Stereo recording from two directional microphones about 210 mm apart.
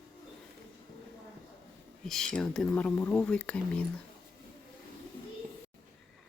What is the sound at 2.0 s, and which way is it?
Speech, centre (ahead or behind).